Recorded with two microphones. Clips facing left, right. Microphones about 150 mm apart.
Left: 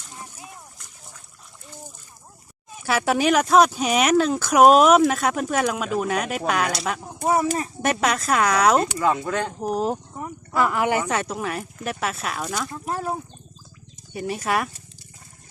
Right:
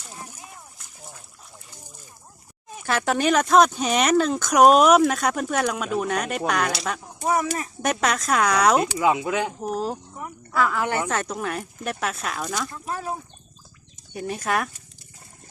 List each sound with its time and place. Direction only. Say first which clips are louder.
2.8 s speech: left 2 dB; 5° left (ahead or behind)
7.3 s speech: left 2 dB; 30° left (ahead or behind)
7.8 s speech: even; centre (ahead or behind)
8.8 s speech: right 1 dB; 10° right (ahead or behind)
10.5 s speech: left 2 dB; 15° left (ahead or behind)
11.0 s speech: left 1 dB; centre (ahead or behind)
14.1 s speech: left 1 dB; 5° left (ahead or behind)